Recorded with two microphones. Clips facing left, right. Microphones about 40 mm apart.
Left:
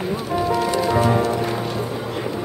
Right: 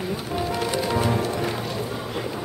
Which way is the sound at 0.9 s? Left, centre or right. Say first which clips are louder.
Left 6 dB; centre.